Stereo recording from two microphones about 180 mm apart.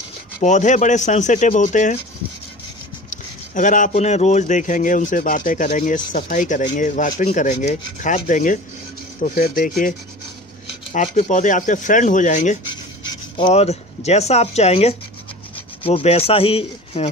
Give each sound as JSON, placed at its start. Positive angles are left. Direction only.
{"t": 0.4, "sound": "speech", "side_deg": 40}
{"t": 3.1, "sound": "speech", "side_deg": 45}
{"t": 10.9, "sound": "speech", "side_deg": 35}
{"t": 13.0, "sound": "a sound", "side_deg": 25}
{"t": 13.5, "sound": "speech", "side_deg": 35}
{"t": 15.5, "sound": "rub", "side_deg": 30}